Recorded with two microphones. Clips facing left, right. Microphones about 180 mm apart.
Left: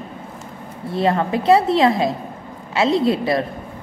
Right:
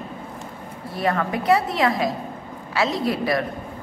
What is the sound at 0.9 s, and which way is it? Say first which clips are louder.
A woman's voice: left 5 dB; 25° left (ahead or behind).